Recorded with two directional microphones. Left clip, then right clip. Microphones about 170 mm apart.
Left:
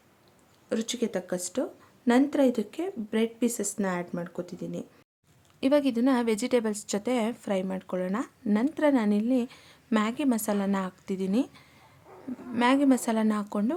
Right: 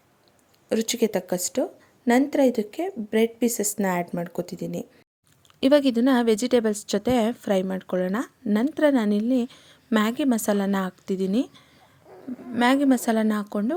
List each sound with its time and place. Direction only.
0.7 s a woman's voice: 25° right (ahead or behind)
12.5 s a woman's voice: 25° right (ahead or behind)